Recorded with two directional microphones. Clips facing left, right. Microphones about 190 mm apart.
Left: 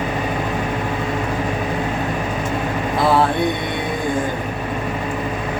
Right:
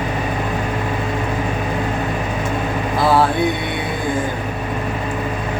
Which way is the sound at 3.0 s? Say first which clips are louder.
Right 1 dB; centre (ahead or behind).